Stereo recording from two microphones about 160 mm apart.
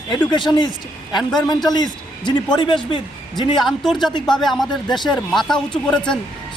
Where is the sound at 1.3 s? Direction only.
25° left (ahead or behind).